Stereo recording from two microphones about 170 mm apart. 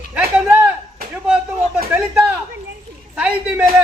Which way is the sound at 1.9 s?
15° right (ahead or behind).